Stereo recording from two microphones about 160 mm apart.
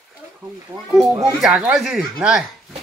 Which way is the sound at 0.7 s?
25° right (ahead or behind).